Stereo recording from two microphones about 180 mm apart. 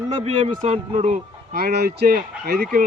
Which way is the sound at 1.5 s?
60° right (ahead or behind).